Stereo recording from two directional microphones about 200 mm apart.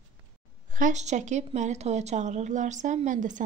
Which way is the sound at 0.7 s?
40° right (ahead or behind).